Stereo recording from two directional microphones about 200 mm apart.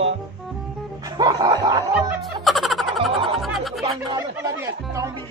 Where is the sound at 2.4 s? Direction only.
Centre (ahead or behind).